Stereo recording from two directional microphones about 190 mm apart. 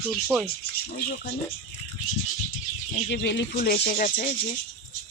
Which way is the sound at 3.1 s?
65° left (ahead or behind).